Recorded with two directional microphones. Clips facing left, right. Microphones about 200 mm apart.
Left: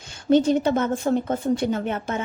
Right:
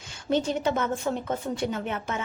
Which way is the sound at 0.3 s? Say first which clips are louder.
Left 7 dB; 35° left (ahead or behind).